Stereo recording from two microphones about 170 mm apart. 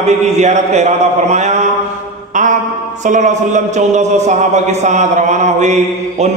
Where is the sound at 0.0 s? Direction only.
40° right (ahead or behind).